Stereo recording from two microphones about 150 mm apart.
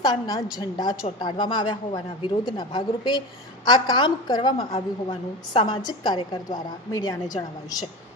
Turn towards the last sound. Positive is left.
turn(degrees=25)  # may be behind; listen again after turning